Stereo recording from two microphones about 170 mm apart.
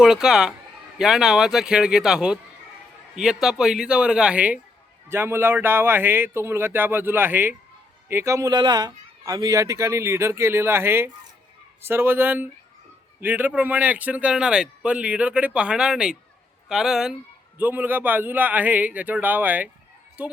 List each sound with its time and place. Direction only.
0.0 s a man's voice: 5° right (ahead or behind)